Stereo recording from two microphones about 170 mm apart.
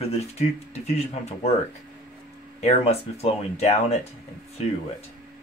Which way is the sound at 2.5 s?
40° left (ahead or behind).